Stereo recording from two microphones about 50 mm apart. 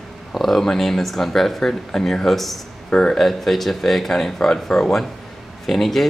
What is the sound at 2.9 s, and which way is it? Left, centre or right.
Speech, centre.